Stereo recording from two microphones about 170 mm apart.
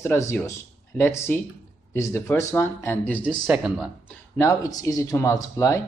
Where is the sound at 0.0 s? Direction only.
15° left (ahead or behind).